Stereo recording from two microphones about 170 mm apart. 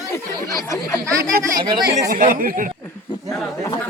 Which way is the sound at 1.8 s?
55° right (ahead or behind).